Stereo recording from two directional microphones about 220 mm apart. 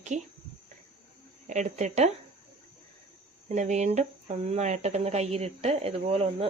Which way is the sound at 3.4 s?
35° right (ahead or behind).